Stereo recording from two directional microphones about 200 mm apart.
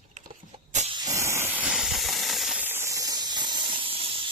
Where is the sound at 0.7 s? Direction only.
35° right (ahead or behind).